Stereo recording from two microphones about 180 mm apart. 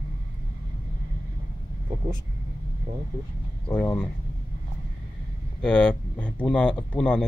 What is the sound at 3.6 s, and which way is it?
Speech, 5° left (ahead or behind).